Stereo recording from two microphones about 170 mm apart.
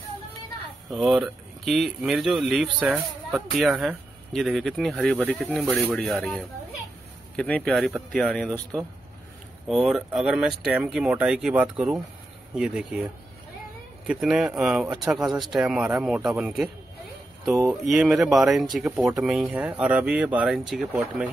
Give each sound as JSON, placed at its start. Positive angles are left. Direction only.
{"t": 0.8, "sound": "speech", "side_deg": 0}
{"t": 14.0, "sound": "speech", "side_deg": 0}